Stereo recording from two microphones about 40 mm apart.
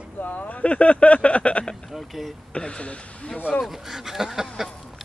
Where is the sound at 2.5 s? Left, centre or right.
Left.